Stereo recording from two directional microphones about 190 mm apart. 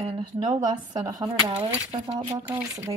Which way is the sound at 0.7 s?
20° right (ahead or behind).